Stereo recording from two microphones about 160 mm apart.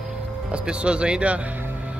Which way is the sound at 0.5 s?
5° right (ahead or behind).